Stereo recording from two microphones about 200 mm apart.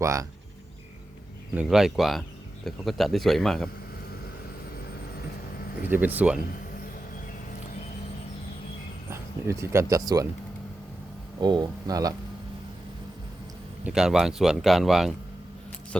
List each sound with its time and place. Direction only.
0.0 s speech: 15° right (ahead or behind)
1.5 s speech: centre (ahead or behind)
5.8 s speech: 10° right (ahead or behind)
9.0 s speech: 15° right (ahead or behind)
11.3 s speech: 20° right (ahead or behind)
13.8 s speech: centre (ahead or behind)